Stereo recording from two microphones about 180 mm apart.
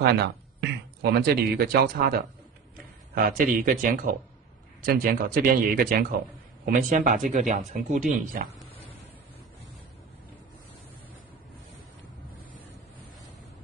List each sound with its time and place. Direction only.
0.0 s speech: 65° right (ahead or behind)
3.3 s speech: 50° right (ahead or behind)